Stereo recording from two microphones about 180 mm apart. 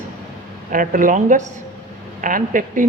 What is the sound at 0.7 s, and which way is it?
Speech, 50° right (ahead or behind).